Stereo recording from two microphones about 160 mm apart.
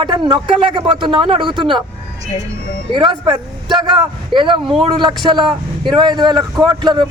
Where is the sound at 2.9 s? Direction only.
30° right (ahead or behind).